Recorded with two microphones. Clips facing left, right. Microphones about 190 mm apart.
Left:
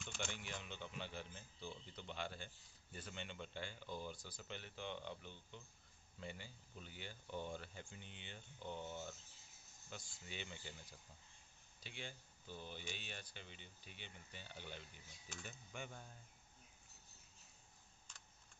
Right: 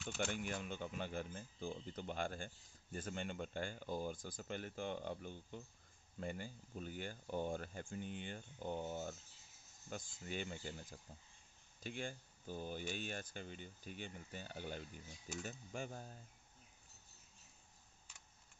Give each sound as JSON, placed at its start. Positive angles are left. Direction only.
{"t": 0.2, "sound": "speech", "side_deg": -45}